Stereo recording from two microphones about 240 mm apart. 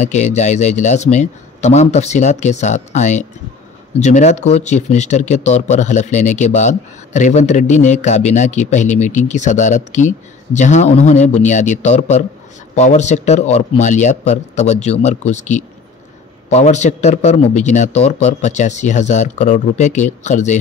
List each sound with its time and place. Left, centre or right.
0.0 s speech: left